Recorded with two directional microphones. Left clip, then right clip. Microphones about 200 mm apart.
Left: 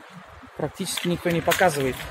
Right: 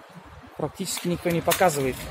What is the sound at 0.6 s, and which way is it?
Speech, 5° left (ahead or behind).